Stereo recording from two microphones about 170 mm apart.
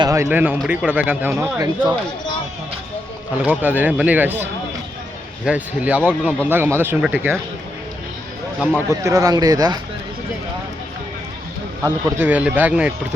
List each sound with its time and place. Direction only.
0.0 s speech: 15° right (ahead or behind)
3.4 s speech: 10° right (ahead or behind)
5.5 s speech: 10° right (ahead or behind)
8.9 s speech: 20° right (ahead or behind)
11.8 s speech: 15° right (ahead or behind)